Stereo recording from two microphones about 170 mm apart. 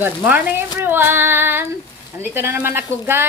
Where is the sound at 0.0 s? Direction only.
10° right (ahead or behind).